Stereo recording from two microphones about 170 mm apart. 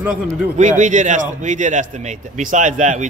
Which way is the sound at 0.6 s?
45° right (ahead or behind).